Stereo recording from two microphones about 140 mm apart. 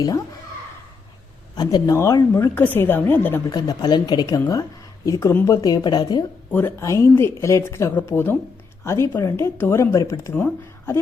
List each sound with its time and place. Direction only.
1.5 s speech: 25° left (ahead or behind)
3.5 s speech: 30° left (ahead or behind)
6.5 s speech: 15° left (ahead or behind)